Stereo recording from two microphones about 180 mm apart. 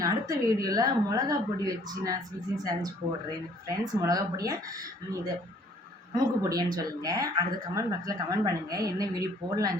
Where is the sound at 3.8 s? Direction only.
20° right (ahead or behind).